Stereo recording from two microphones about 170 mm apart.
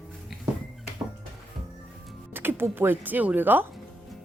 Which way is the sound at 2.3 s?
10° right (ahead or behind).